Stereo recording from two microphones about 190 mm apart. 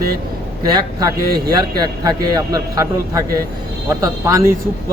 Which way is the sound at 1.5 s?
20° right (ahead or behind).